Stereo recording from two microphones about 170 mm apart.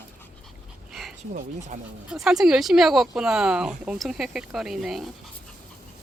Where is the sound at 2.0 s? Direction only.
5° right (ahead or behind).